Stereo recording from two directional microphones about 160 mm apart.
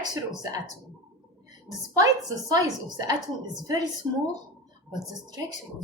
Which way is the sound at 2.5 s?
25° right (ahead or behind).